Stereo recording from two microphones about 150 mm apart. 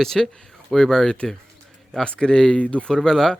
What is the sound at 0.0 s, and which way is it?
Speech, 5° left (ahead or behind).